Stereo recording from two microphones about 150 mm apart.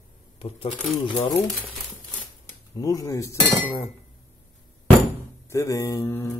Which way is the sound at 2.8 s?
25° left (ahead or behind).